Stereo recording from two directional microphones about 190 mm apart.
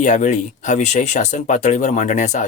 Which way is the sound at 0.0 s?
40° left (ahead or behind).